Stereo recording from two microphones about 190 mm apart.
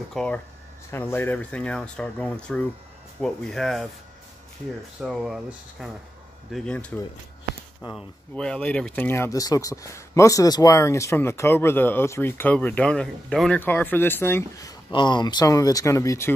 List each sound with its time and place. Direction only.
0.1 s speech: 5° left (ahead or behind)
5.0 s speech: centre (ahead or behind)
7.9 s speech: 5° left (ahead or behind)
14.9 s speech: 25° left (ahead or behind)